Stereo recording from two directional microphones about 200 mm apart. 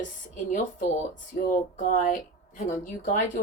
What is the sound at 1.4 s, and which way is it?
A woman's voice, 40° left (ahead or behind).